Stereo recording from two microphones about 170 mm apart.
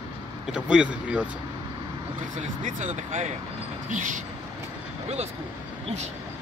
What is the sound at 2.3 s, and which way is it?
Speech, 45° right (ahead or behind).